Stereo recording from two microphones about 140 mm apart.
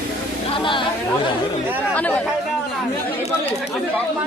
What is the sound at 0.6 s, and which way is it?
Speech, 35° left (ahead or behind).